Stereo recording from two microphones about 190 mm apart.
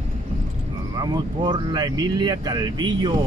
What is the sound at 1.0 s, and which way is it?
Speech, 20° right (ahead or behind).